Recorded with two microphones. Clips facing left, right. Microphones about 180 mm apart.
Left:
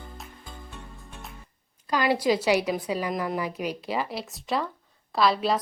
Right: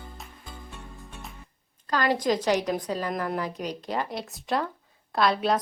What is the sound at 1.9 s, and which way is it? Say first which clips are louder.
A woman's voice: left 1 dB; 10° left (ahead or behind).